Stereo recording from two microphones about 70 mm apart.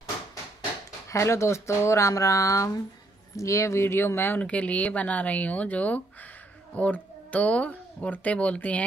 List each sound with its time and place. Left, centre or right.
1.0 s speech: left
4.4 s speech: centre